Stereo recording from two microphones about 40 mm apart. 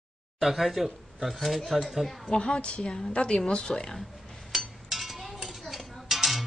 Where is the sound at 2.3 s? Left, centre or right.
Left.